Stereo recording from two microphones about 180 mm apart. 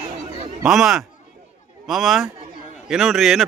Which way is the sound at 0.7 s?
Centre (ahead or behind).